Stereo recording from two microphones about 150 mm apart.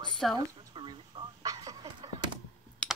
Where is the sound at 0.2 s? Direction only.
Centre (ahead or behind).